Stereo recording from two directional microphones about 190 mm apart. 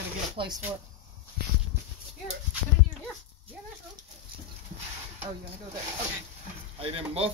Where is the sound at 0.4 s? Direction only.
25° right (ahead or behind).